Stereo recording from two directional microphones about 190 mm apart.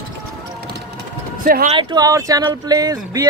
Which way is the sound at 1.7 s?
25° right (ahead or behind).